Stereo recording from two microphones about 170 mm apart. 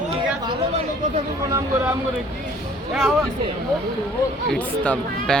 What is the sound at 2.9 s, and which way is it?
Speech, 5° right (ahead or behind).